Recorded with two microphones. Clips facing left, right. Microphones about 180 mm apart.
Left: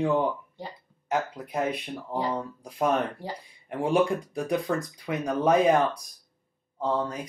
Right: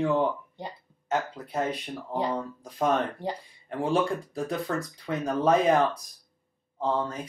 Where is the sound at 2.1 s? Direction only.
10° left (ahead or behind).